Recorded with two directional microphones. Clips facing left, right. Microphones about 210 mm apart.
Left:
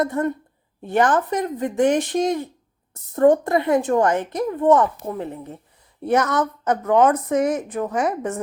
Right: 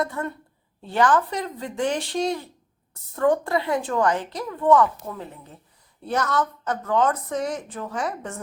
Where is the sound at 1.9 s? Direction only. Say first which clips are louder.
Left 2 dB; 20° left (ahead or behind).